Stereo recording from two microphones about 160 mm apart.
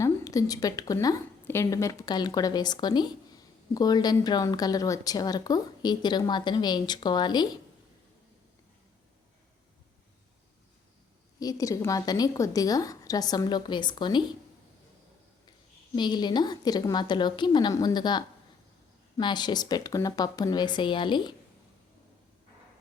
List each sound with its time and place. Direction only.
0.0 s speech: 20° left (ahead or behind)
11.3 s speech: 20° left (ahead or behind)
16.0 s speech: 25° left (ahead or behind)